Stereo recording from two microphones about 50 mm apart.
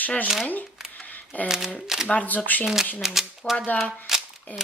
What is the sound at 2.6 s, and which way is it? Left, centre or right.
Speech, centre.